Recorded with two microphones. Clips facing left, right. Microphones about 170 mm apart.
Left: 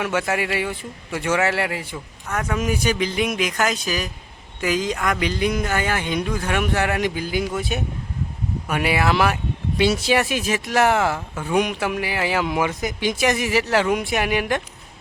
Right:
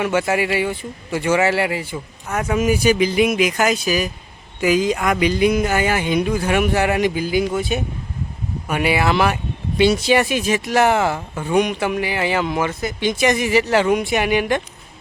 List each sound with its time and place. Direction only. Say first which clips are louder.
0.0 s speech: right 4 dB; centre (ahead or behind)